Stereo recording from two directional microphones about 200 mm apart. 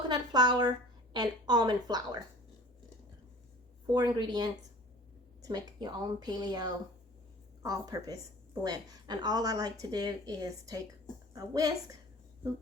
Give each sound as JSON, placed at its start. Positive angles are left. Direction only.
{"t": 0.1, "sound": "a sound", "side_deg": -20}
{"t": 1.1, "sound": "a woman's voice", "side_deg": -20}
{"t": 3.8, "sound": "a woman's voice", "side_deg": -20}